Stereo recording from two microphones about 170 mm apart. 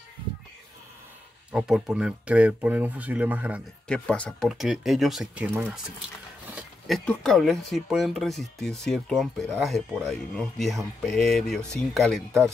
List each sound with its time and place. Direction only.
1.5 s speech: 5° right (ahead or behind)
3.8 s speech: 5° left (ahead or behind)
7.1 s speech: centre (ahead or behind)